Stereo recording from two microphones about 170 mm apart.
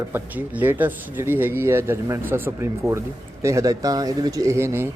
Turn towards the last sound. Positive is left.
turn(degrees=-15)  # may be behind; listen again after turning